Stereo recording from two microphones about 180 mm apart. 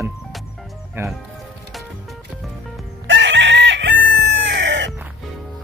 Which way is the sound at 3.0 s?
90° right.